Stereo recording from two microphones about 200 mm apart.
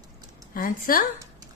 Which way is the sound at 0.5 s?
45° left (ahead or behind).